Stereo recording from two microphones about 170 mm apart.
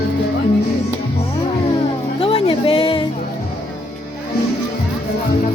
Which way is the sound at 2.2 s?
35° left (ahead or behind).